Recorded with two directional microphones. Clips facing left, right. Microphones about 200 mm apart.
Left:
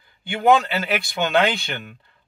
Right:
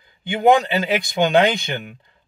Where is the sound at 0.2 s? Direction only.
20° right (ahead or behind).